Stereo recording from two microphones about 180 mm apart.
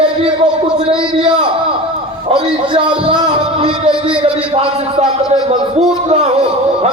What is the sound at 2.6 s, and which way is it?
Speech, 25° right (ahead or behind).